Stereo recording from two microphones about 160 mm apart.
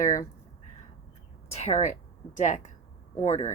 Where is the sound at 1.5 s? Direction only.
40° left (ahead or behind).